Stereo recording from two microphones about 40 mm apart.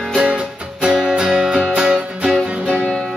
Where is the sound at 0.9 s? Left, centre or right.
Centre.